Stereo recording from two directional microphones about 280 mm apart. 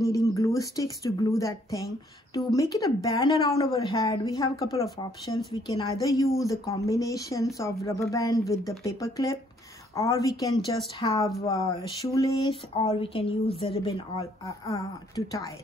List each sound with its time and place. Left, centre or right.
0.0 s speech: centre